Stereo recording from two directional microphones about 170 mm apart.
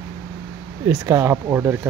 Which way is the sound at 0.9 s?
10° right (ahead or behind).